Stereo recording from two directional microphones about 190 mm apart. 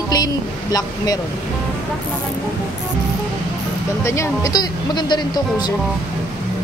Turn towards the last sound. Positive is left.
turn(degrees=20)  # may be behind; listen again after turning